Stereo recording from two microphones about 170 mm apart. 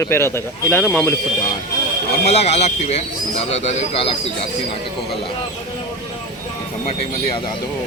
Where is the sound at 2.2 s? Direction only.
35° left (ahead or behind).